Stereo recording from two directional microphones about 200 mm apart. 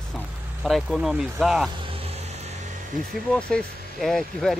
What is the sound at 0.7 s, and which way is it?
Speech, centre (ahead or behind).